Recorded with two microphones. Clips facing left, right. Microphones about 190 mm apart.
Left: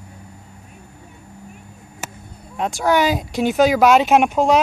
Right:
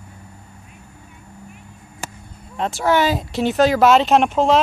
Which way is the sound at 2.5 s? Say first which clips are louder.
Even; centre (ahead or behind).